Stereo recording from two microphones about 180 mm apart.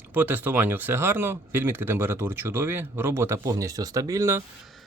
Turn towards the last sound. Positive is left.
turn(degrees=-15)  # may be behind; listen again after turning